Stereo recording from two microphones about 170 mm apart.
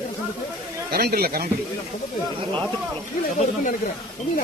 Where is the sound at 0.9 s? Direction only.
65° right (ahead or behind).